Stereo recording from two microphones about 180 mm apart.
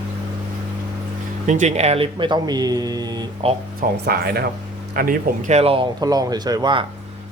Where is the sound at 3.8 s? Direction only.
60° right (ahead or behind).